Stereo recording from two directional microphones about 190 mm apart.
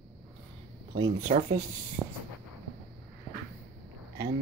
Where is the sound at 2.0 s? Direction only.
5° right (ahead or behind).